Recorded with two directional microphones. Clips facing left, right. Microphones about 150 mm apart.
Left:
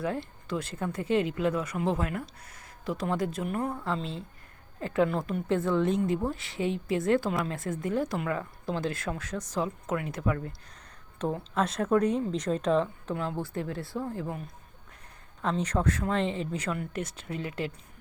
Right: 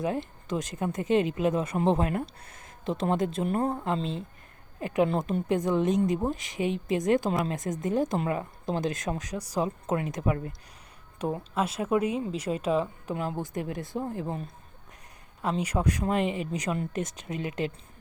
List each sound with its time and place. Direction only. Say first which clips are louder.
0.0 s speech: right 2 dB; 20° right (ahead or behind)
15.4 s speech: even; 10° right (ahead or behind)